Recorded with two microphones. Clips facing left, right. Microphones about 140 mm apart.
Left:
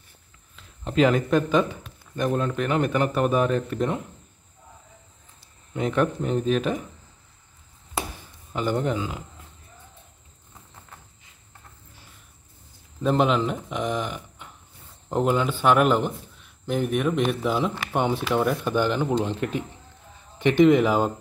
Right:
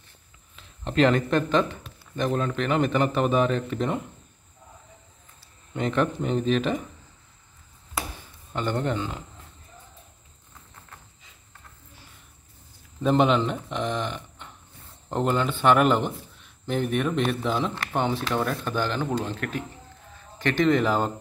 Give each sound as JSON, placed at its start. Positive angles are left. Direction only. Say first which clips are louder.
{"t": 0.6, "sound": "speech", "louder": "left 1 dB", "side_deg": 5}
{"t": 5.7, "sound": "speech", "louder": "left 1 dB", "side_deg": 5}
{"t": 8.5, "sound": "speech", "louder": "left 2 dB", "side_deg": 10}
{"t": 13.0, "sound": "speech", "louder": "right 1 dB", "side_deg": 0}